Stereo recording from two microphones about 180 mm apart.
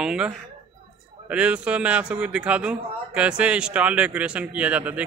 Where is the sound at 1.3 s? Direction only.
5° right (ahead or behind).